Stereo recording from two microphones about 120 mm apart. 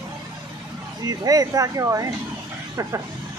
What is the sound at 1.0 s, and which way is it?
Speech, 30° right (ahead or behind).